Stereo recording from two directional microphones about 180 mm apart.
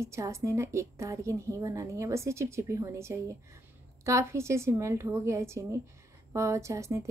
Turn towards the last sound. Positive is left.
turn(degrees=-15)  # may be behind; listen again after turning